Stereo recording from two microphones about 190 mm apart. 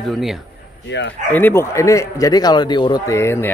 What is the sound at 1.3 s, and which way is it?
A man's voice, 10° left (ahead or behind).